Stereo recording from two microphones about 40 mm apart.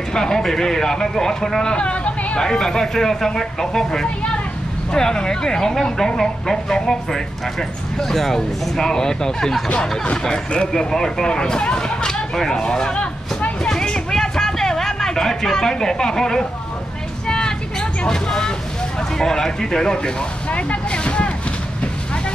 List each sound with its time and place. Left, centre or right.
0.1 s speech: centre
1.6 s speech: left
2.4 s speech: centre
10.7 s speech: centre; by 13.5 s left
13.7 s a sound: centre
17.3 s vehicle: centre
19.1 s speech: centre
20.4 s vehicle: left